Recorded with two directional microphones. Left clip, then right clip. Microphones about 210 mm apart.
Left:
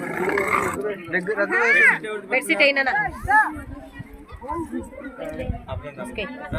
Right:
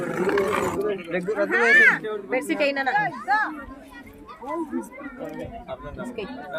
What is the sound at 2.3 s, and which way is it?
Speech, 35° left (ahead or behind).